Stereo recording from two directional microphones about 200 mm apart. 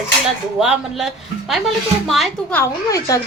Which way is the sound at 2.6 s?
15° left (ahead or behind).